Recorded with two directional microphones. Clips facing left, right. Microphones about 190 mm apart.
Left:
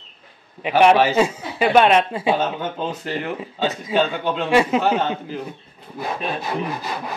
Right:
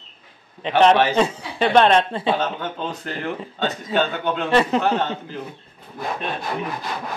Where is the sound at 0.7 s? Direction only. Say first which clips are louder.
Left 1 dB; 10° left (ahead or behind).